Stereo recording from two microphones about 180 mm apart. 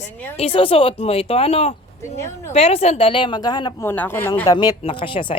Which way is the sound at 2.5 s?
35° left (ahead or behind).